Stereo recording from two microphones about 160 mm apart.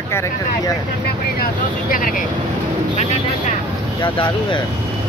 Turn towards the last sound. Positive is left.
turn(degrees=30)  # may be behind; listen again after turning